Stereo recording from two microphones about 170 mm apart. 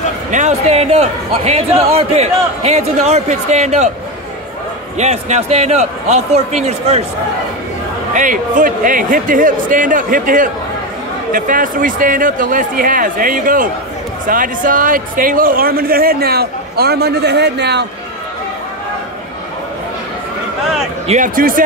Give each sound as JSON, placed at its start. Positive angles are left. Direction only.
{"t": 0.3, "sound": "speech", "side_deg": -45}
{"t": 4.9, "sound": "speech", "side_deg": -40}
{"t": 8.1, "sound": "a man's voice", "side_deg": -50}
{"t": 21.1, "sound": "a man's voice", "side_deg": -55}